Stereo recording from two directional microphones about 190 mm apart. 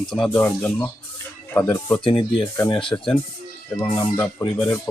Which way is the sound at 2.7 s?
25° left (ahead or behind).